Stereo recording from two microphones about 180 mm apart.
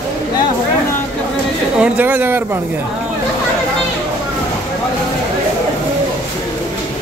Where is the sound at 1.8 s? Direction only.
10° right (ahead or behind).